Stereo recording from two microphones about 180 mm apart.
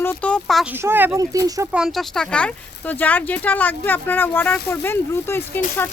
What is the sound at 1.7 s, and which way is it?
Speech, centre (ahead or behind).